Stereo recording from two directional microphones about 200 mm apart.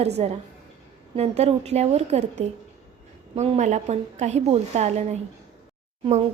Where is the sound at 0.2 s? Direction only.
30° right (ahead or behind).